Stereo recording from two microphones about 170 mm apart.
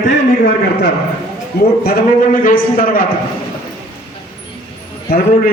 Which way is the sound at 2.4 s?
55° left (ahead or behind).